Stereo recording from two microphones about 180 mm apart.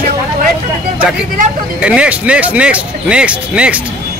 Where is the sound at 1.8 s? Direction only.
5° right (ahead or behind).